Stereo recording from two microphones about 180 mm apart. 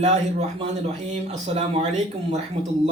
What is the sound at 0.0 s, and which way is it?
Speech, 40° right (ahead or behind).